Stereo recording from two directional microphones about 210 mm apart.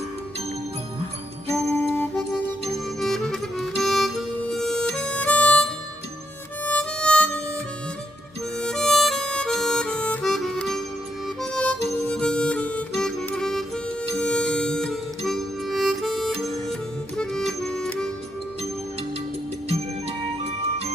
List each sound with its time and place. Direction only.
1.5 s music: 5° left (ahead or behind)
8.5 s harmonica: 5° left (ahead or behind)
14.1 s music: 5° left (ahead or behind)
20.4 s music: 30° right (ahead or behind)